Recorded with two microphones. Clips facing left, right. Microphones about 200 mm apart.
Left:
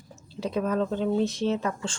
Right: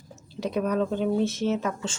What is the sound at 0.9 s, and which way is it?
Speech, 10° right (ahead or behind).